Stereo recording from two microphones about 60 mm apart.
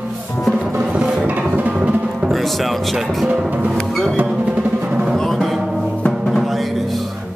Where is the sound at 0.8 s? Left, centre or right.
Centre.